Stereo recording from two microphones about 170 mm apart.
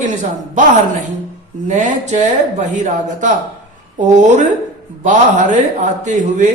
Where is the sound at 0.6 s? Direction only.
45° right (ahead or behind).